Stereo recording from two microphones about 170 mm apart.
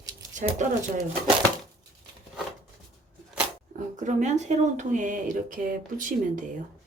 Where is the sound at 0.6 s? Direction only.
45° right (ahead or behind).